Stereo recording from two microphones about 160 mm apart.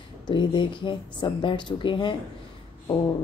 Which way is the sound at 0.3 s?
30° left (ahead or behind).